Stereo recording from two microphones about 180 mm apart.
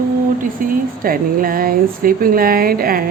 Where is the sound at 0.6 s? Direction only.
50° right (ahead or behind).